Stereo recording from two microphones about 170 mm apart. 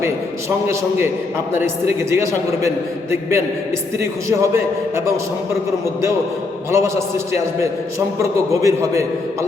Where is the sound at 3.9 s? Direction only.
15° right (ahead or behind).